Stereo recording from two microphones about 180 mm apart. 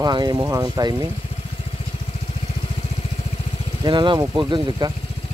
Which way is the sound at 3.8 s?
25° right (ahead or behind).